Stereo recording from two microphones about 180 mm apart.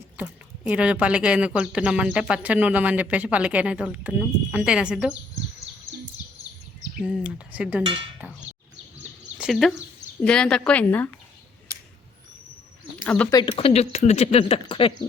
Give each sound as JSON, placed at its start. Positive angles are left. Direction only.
{"t": 0.2, "sound": "speech", "side_deg": -5}
{"t": 7.0, "sound": "speech", "side_deg": -5}
{"t": 7.9, "sound": "speech", "side_deg": -30}
{"t": 9.4, "sound": "a woman's voice", "side_deg": 0}
{"t": 13.3, "sound": "speech", "side_deg": 30}